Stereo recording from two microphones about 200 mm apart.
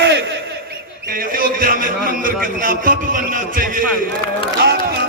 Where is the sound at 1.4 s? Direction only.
45° right (ahead or behind).